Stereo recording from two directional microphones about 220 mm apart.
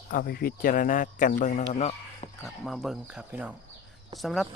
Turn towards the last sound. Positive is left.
turn(degrees=0)  # may be behind; listen again after turning